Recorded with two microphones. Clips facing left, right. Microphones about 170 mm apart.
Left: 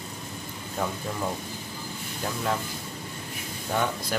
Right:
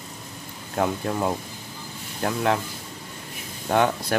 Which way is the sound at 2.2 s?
65° right (ahead or behind).